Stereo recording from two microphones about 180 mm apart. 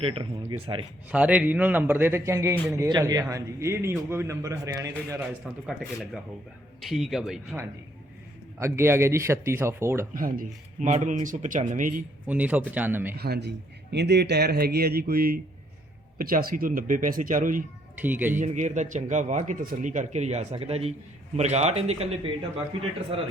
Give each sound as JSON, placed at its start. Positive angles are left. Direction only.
{"t": 0.0, "sound": "a man's voice", "side_deg": -30}
{"t": 1.1, "sound": "a man's voice", "side_deg": -5}
{"t": 5.6, "sound": "speech", "side_deg": 0}
{"t": 8.5, "sound": "a man's voice", "side_deg": -15}
{"t": 10.2, "sound": "speech", "side_deg": -50}
{"t": 12.3, "sound": "a man's voice", "side_deg": -10}
{"t": 13.1, "sound": "a man's voice", "side_deg": -60}
{"t": 18.0, "sound": "a man's voice", "side_deg": -10}
{"t": 18.3, "sound": "a man's voice", "side_deg": -40}